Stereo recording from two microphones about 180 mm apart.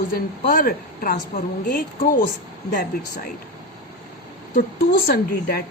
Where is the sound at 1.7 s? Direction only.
50° left (ahead or behind).